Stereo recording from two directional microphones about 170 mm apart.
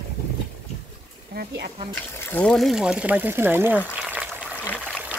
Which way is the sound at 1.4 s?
70° right (ahead or behind).